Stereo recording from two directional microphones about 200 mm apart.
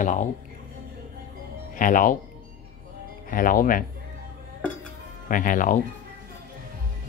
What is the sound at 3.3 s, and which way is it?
Speech, 45° left (ahead or behind).